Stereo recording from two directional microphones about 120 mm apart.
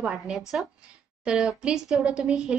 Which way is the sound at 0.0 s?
5° right (ahead or behind).